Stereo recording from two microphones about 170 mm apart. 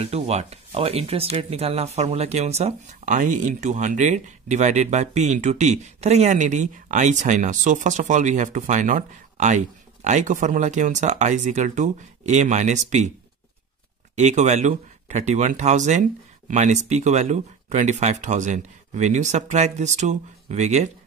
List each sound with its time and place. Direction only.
0.0 s speech: 40° right (ahead or behind)
14.1 s speech: 45° right (ahead or behind)